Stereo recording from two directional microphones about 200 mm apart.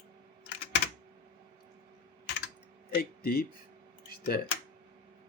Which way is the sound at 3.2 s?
50° left (ahead or behind).